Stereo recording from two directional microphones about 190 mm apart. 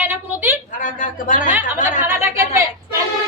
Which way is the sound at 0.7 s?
45° left (ahead or behind).